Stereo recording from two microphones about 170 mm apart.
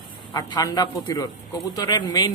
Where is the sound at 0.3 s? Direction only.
20° left (ahead or behind).